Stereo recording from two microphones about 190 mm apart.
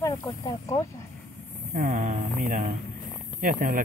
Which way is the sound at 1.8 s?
40° right (ahead or behind).